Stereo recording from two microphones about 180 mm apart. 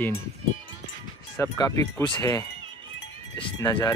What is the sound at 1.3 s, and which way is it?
Speech, 20° left (ahead or behind).